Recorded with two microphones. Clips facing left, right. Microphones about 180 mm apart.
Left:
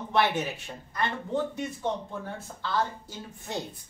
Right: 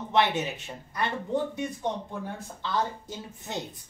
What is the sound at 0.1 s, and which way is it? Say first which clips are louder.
Speech: right 1 dB; 20° right (ahead or behind).